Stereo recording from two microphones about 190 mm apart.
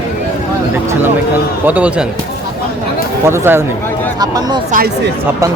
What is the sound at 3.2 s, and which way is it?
Speech, 10° right (ahead or behind).